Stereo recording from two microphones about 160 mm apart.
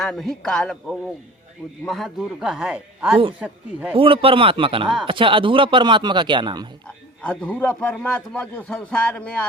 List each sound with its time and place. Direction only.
0.0 s speech: centre (ahead or behind)
3.9 s speech: 35° right (ahead or behind)
6.8 s a man's voice: 5° left (ahead or behind)